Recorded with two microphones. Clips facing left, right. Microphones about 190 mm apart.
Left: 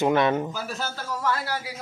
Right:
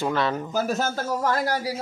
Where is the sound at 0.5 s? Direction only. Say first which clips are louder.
Right 8 dB; 45° right (ahead or behind).